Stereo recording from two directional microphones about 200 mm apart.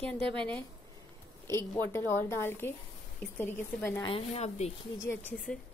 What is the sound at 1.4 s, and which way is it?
A woman's voice, 15° left (ahead or behind).